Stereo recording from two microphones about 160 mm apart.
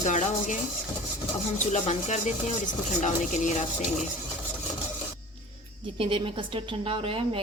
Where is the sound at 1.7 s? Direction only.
45° left (ahead or behind).